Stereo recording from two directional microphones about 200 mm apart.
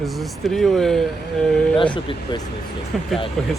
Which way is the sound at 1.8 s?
25° left (ahead or behind).